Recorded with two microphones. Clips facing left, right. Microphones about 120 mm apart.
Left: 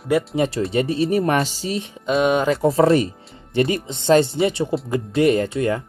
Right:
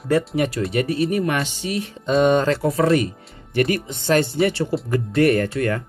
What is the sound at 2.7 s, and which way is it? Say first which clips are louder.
Speech: left 5 dB; 30° left (ahead or behind).